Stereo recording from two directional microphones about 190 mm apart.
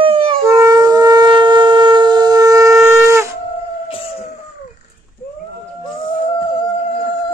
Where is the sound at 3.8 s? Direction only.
30° left (ahead or behind).